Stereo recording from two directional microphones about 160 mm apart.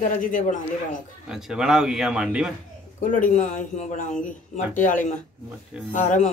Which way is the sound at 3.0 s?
55° left (ahead or behind).